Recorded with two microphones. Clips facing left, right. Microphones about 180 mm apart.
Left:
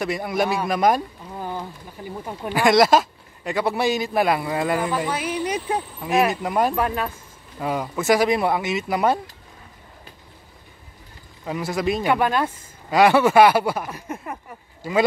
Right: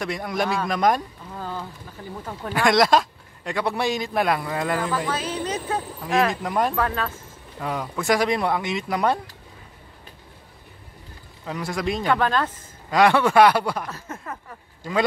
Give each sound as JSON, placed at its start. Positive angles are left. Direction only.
{"t": 0.0, "sound": "speech", "side_deg": 5}
{"t": 1.3, "sound": "a sound", "side_deg": 15}
{"t": 2.0, "sound": "a man's voice", "side_deg": 10}
{"t": 6.7, "sound": "speech", "side_deg": 15}
{"t": 7.6, "sound": "speech", "side_deg": 5}
{"t": 11.4, "sound": "speech", "side_deg": 5}